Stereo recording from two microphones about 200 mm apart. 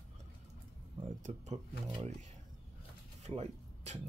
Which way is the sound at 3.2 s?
35° right (ahead or behind).